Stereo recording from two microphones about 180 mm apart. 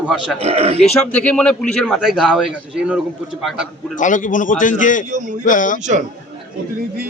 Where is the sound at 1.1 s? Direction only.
5° left (ahead or behind).